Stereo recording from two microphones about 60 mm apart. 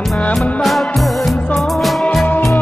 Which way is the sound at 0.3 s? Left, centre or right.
Centre.